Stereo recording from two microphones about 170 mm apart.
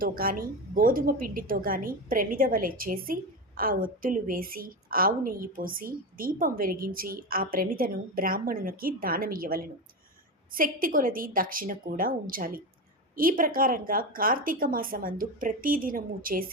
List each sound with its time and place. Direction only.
0.0 s a woman's voice: 55° right (ahead or behind)